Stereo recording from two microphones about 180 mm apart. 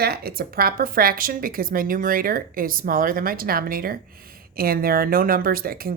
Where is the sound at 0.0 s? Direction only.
60° right (ahead or behind).